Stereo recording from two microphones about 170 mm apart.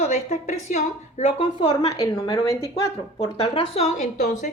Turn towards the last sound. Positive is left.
turn(degrees=45)  # may be behind; listen again after turning